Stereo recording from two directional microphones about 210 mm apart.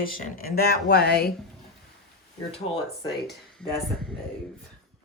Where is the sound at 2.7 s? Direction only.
30° left (ahead or behind).